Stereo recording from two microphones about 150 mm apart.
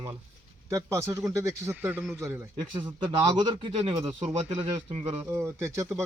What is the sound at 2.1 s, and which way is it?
Speech, centre (ahead or behind).